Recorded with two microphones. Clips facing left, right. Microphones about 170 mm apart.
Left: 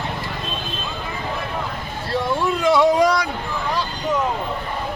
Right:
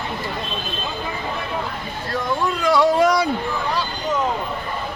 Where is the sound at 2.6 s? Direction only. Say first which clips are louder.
Left 1 dB; 20° left (ahead or behind).